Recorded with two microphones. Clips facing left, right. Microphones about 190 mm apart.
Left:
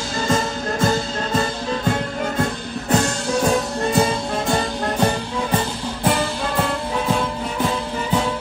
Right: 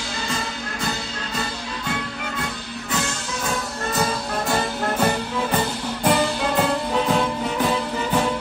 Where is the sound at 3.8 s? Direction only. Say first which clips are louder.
Left 4 dB; 30° left (ahead or behind).